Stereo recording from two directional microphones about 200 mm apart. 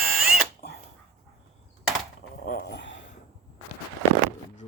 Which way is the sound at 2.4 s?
45° left (ahead or behind).